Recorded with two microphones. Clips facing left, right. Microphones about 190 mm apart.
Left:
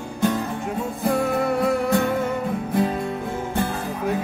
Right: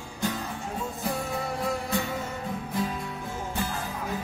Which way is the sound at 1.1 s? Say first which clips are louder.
Left 11 dB; 65° left (ahead or behind).